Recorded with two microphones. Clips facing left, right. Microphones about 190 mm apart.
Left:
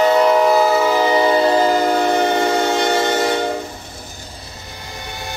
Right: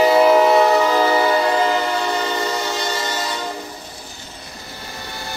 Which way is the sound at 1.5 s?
40° left (ahead or behind).